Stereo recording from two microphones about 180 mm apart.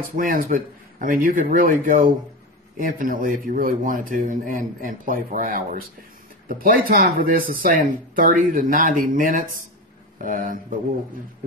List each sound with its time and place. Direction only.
0.1 s speech: 50° right (ahead or behind)